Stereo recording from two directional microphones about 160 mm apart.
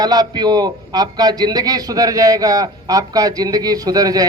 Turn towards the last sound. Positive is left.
turn(degrees=-25)  # may be behind; listen again after turning